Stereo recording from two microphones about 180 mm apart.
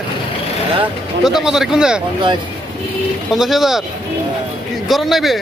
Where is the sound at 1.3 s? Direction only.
5° right (ahead or behind).